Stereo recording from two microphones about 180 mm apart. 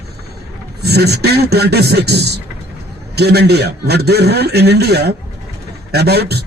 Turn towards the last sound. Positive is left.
turn(degrees=-65)  # may be behind; listen again after turning